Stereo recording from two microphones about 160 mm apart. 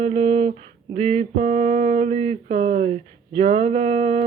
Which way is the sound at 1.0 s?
40° right (ahead or behind).